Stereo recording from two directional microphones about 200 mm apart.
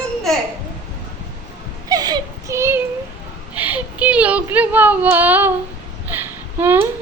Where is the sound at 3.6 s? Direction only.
10° right (ahead or behind).